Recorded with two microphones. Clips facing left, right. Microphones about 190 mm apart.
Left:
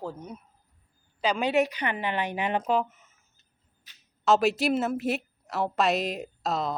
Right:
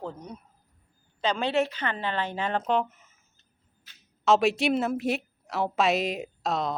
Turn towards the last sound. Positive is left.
turn(degrees=0)  # may be behind; listen again after turning